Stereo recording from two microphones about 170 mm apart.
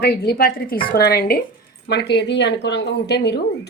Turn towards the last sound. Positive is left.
turn(degrees=75)  # may be behind; listen again after turning